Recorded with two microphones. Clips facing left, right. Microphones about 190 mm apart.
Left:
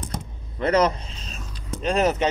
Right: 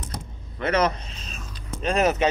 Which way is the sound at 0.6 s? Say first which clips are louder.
Left 3 dB; 30° left (ahead or behind).